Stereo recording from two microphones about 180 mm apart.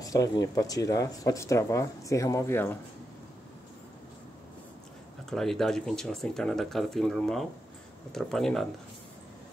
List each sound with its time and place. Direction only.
0.0 s speech: 20° left (ahead or behind)
5.3 s speech: centre (ahead or behind)